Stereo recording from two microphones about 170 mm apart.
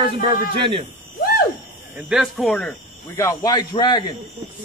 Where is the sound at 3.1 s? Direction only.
20° left (ahead or behind).